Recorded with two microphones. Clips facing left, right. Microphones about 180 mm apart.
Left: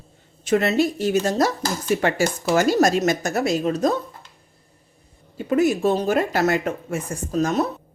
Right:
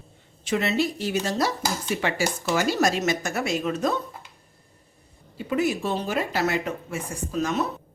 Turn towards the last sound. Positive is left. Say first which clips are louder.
# left 4 dB
turn(degrees=40)  # may be behind; listen again after turning